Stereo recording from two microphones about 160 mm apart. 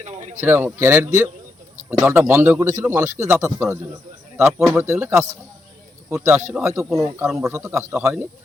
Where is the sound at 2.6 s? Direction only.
20° right (ahead or behind).